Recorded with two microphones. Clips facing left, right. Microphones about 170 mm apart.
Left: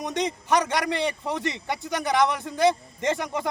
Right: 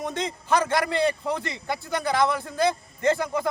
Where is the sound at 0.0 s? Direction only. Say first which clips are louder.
Left 2 dB; 20° left (ahead or behind).